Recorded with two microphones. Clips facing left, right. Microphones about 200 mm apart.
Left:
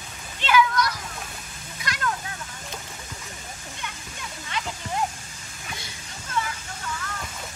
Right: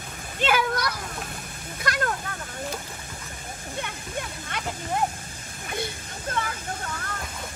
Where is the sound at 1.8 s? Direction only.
55° right (ahead or behind).